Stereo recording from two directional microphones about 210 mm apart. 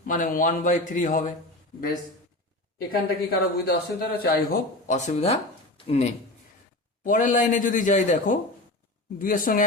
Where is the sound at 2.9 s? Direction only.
45° left (ahead or behind).